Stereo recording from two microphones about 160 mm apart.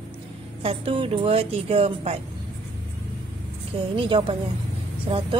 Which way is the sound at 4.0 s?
35° right (ahead or behind).